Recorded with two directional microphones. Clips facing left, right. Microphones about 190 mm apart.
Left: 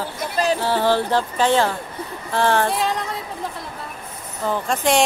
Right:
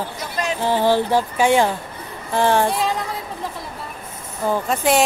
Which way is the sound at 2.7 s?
Centre (ahead or behind).